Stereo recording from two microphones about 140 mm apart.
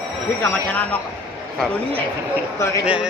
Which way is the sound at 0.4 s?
15° left (ahead or behind).